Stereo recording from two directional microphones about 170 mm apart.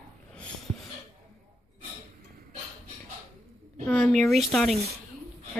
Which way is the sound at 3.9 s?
5° left (ahead or behind).